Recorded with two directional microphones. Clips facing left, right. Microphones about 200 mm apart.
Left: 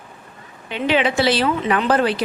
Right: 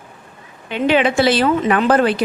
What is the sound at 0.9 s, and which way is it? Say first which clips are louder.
Speech: right 3 dB; 50° right (ahead or behind).